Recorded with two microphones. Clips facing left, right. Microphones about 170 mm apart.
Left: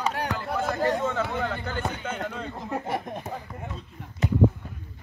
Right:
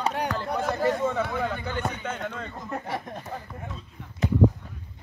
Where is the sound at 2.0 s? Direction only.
5° left (ahead or behind).